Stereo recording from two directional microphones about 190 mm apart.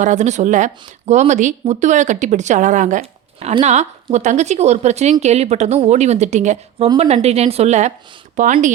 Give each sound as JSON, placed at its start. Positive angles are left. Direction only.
{"t": 0.0, "sound": "speech", "side_deg": -40}
{"t": 6.8, "sound": "a woman's voice", "side_deg": -25}
{"t": 7.1, "sound": "speech", "side_deg": -35}